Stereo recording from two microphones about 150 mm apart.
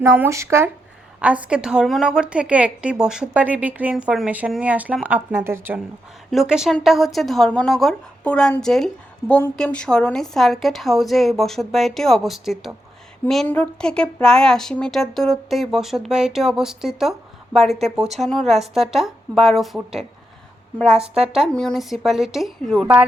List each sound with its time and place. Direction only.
0.2 s a woman's voice: 20° right (ahead or behind)
6.3 s a woman's voice: 5° right (ahead or behind)